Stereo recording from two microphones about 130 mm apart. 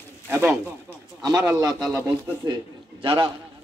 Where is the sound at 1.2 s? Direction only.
30° right (ahead or behind).